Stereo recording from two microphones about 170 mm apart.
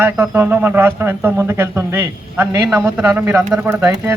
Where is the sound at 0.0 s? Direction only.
15° right (ahead or behind).